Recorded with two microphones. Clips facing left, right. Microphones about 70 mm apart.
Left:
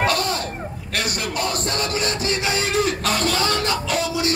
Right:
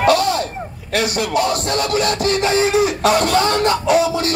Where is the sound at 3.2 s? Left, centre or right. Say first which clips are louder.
Right 6 dB; right.